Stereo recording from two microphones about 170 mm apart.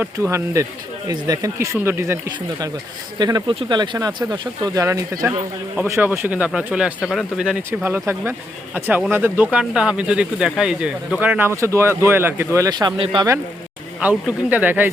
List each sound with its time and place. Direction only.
0.0 s speech: 15° right (ahead or behind)
5.7 s speech: 10° right (ahead or behind)
14.0 s speech: 10° right (ahead or behind)